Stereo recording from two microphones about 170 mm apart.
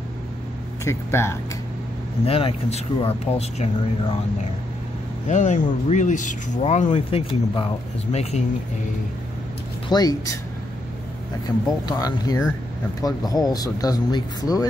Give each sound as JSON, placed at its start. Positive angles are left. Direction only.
{"t": 0.8, "sound": "speech", "side_deg": 15}
{"t": 2.2, "sound": "speech", "side_deg": 35}
{"t": 5.3, "sound": "speech", "side_deg": 45}
{"t": 9.8, "sound": "speech", "side_deg": 25}
{"t": 11.4, "sound": "speech", "side_deg": 25}